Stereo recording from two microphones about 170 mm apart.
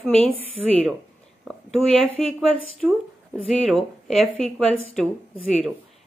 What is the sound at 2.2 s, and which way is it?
A woman's voice, centre (ahead or behind).